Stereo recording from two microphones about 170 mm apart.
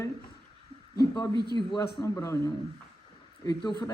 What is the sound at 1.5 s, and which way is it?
Speech, 25° left (ahead or behind).